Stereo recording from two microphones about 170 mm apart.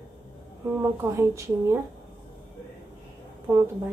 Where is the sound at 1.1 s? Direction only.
15° right (ahead or behind).